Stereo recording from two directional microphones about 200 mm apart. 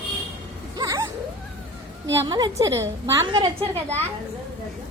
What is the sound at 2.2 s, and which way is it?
A woman's voice, 20° right (ahead or behind).